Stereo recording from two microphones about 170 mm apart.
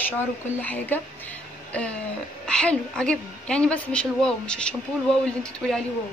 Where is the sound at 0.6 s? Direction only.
10° left (ahead or behind).